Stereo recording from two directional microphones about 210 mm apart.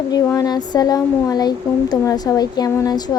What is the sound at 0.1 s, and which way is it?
Speech, 15° left (ahead or behind).